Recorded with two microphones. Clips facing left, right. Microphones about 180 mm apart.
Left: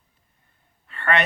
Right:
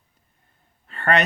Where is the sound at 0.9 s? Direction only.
40° right (ahead or behind).